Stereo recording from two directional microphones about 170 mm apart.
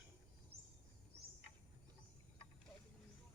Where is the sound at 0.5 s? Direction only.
65° right (ahead or behind).